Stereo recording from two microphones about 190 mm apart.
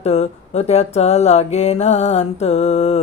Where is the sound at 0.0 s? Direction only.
35° left (ahead or behind).